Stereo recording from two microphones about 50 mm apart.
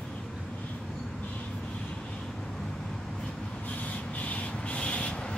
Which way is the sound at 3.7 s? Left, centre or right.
Left.